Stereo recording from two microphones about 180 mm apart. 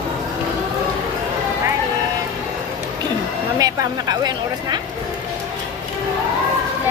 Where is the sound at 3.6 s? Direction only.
20° right (ahead or behind).